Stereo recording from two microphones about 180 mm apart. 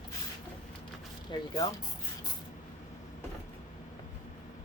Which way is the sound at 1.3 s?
25° left (ahead or behind).